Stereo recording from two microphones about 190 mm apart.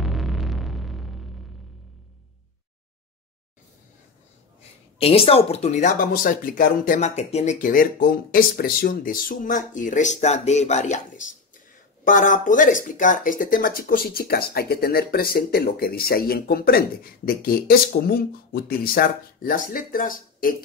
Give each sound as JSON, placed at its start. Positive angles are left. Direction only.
{"t": 0.0, "sound": "hum", "side_deg": 0}
{"t": 5.0, "sound": "speech", "side_deg": 30}